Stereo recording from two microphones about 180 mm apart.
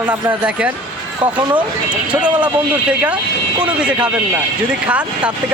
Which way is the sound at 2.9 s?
5° right (ahead or behind).